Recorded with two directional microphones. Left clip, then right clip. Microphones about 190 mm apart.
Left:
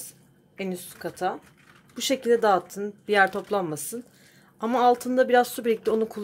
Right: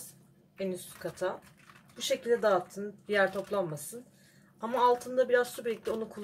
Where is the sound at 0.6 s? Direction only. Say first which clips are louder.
Left 3 dB; 55° left (ahead or behind).